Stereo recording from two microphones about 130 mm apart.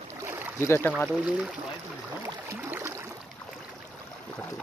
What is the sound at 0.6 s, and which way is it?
Speech, 20° left (ahead or behind).